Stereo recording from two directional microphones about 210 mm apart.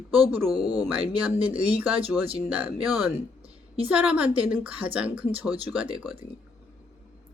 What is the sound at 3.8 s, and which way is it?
Speech, 5° right (ahead or behind).